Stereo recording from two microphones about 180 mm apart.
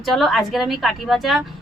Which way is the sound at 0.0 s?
Centre (ahead or behind).